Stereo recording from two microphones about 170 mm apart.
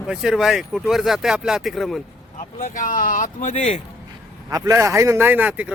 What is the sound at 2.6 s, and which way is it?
Speech, 50° left (ahead or behind).